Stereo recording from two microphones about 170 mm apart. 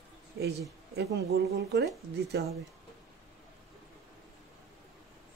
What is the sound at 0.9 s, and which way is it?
Speech, 80° right.